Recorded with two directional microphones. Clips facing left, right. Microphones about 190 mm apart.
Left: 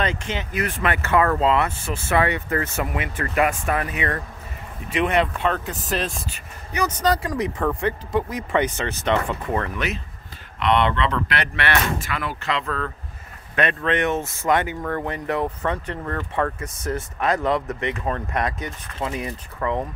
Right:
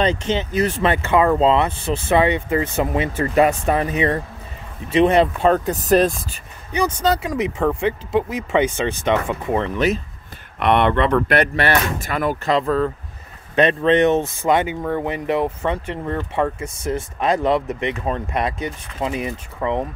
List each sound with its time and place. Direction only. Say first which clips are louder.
0.0 s speech: right 6 dB; 30° right (ahead or behind)
1.0 s speech: right 3 dB; 15° right (ahead or behind)
2.9 s speech: right 7 dB; 30° right (ahead or behind)
6.7 s speech: right 3 dB; 30° right (ahead or behind)
9.8 s speech: right 8 dB; 35° right (ahead or behind)
10.6 s speech: right 4 dB; 55° right (ahead or behind); by 19.9 s 20° right (ahead or behind)